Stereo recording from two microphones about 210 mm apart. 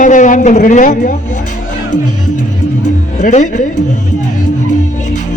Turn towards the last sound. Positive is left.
turn(degrees=35)  # may be behind; listen again after turning